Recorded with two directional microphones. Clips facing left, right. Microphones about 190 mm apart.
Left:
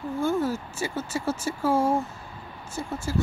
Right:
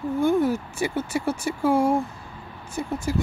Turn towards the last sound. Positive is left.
turn(degrees=-15)  # may be behind; listen again after turning